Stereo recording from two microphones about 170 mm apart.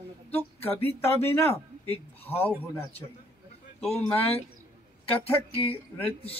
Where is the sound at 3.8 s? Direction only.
5° left (ahead or behind).